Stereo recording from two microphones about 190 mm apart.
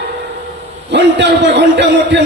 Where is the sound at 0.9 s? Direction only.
65° right (ahead or behind).